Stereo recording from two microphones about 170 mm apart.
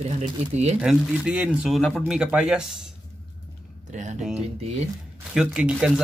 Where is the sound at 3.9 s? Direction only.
45° right (ahead or behind).